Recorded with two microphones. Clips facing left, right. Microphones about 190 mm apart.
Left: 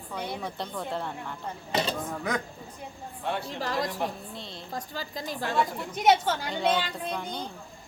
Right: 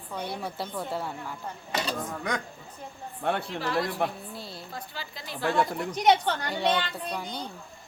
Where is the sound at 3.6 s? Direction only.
40° left (ahead or behind).